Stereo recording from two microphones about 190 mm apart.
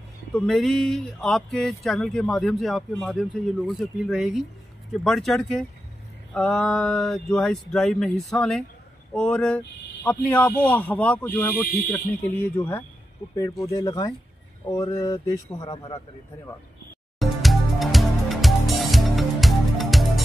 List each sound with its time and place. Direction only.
0.3 s a man's voice: centre (ahead or behind); by 16.0 s 20° left (ahead or behind)
17.2 s music: centre (ahead or behind)